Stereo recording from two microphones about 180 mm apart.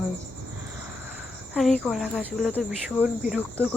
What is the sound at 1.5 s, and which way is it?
Speech, centre (ahead or behind).